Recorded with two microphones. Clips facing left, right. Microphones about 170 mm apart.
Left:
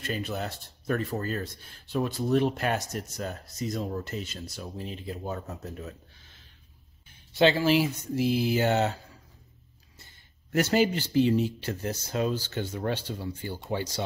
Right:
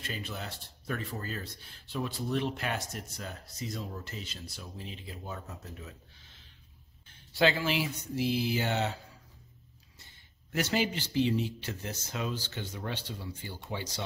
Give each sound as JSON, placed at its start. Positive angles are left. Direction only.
{"t": 0.0, "sound": "speech", "side_deg": 45}
{"t": 7.3, "sound": "speech", "side_deg": 30}
{"t": 10.5, "sound": "speech", "side_deg": 45}